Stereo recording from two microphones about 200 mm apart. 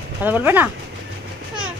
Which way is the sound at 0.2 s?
10° right (ahead or behind).